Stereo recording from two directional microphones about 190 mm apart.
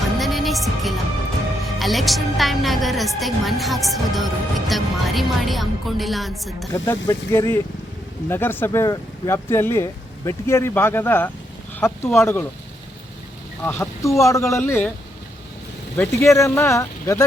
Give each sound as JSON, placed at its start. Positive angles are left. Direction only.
{"t": 0.2, "sound": "music", "side_deg": 0}
{"t": 1.6, "sound": "a woman's voice", "side_deg": 0}
{"t": 6.7, "sound": "speech", "side_deg": 15}
{"t": 13.7, "sound": "speech", "side_deg": 15}
{"t": 16.0, "sound": "speech", "side_deg": 15}